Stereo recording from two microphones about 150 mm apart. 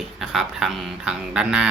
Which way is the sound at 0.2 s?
Centre (ahead or behind).